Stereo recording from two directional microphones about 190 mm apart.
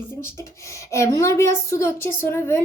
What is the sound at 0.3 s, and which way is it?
A woman's voice, 15° left (ahead or behind).